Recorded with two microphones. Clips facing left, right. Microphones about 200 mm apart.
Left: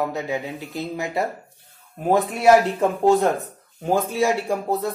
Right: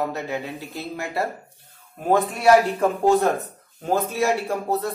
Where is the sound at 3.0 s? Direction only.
15° left (ahead or behind).